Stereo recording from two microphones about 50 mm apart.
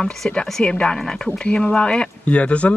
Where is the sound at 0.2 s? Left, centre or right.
Centre.